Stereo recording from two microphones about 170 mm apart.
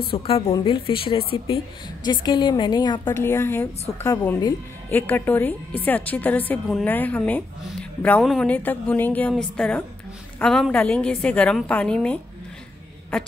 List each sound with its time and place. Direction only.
0.1 s a woman's voice: 30° left (ahead or behind); by 12.2 s 5° left (ahead or behind)